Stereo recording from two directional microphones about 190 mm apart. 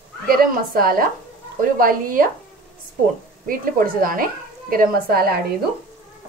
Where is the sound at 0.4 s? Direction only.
50° right (ahead or behind).